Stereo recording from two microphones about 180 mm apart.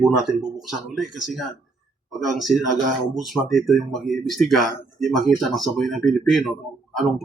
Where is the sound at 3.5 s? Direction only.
Centre (ahead or behind).